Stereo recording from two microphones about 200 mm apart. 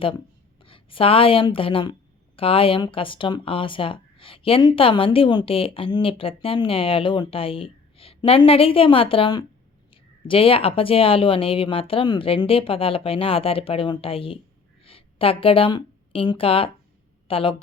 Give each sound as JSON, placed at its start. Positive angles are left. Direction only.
{"t": 0.6, "sound": "a woman's voice", "side_deg": 25}